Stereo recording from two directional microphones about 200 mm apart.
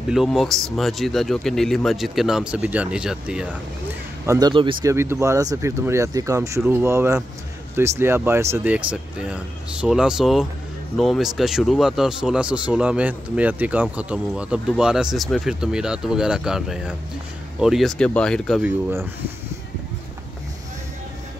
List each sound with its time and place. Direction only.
0.1 s speech: centre (ahead or behind)
4.3 s speech: 20° right (ahead or behind); by 18.6 s 5° left (ahead or behind)
18.6 s speech: 10° right (ahead or behind)